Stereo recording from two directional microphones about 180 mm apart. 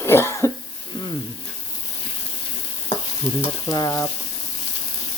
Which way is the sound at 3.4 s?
25° left (ahead or behind).